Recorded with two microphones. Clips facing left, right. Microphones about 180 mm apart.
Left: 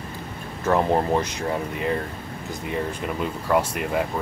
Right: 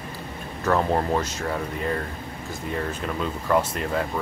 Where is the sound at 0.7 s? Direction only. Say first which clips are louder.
Left 2 dB; 15° left (ahead or behind).